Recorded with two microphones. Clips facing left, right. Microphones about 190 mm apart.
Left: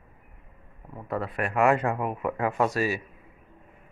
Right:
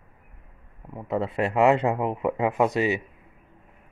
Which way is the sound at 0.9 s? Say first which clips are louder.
Right 4 dB; 25° right (ahead or behind).